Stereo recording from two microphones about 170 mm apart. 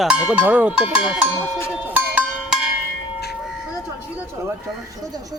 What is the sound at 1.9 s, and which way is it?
Music, 10° right (ahead or behind).